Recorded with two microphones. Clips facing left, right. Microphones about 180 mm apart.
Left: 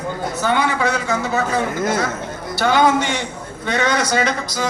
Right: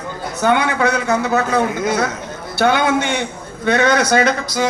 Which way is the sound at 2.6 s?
60° right (ahead or behind).